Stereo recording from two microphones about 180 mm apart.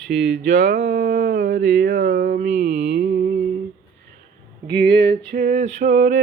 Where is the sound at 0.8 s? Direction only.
65° right (ahead or behind).